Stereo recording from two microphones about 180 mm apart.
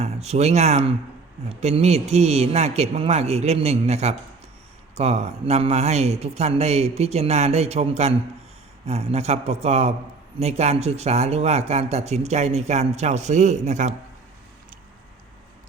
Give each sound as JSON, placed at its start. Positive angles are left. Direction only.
{"t": 0.0, "sound": "speech", "side_deg": -35}